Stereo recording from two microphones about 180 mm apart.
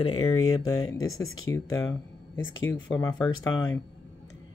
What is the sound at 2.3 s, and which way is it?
Speech, 90° left.